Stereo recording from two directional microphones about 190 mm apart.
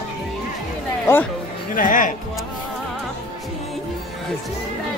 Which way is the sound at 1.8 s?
45° left (ahead or behind).